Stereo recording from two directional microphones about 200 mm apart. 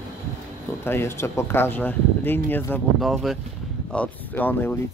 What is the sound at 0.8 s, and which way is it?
Speech, 10° left (ahead or behind).